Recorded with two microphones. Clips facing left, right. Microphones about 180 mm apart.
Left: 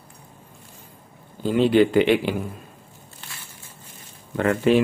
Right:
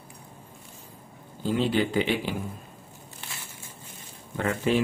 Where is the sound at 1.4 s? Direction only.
65° left (ahead or behind).